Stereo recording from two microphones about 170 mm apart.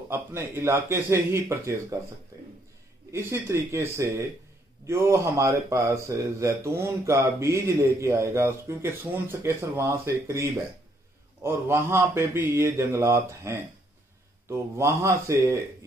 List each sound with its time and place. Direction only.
0.1 s speech: 15° right (ahead or behind)
3.1 s speech: 15° right (ahead or behind)